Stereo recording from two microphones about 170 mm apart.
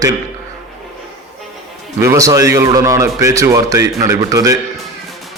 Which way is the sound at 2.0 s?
20° right (ahead or behind).